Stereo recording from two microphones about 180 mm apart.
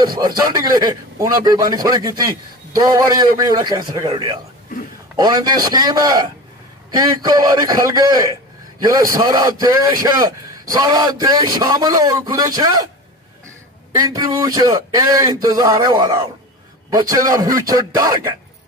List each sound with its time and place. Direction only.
0.5 s a man's voice: 20° right (ahead or behind)
13.9 s a man's voice: 20° right (ahead or behind)